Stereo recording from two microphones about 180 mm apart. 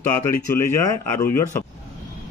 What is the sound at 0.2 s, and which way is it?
Speech, 15° left (ahead or behind).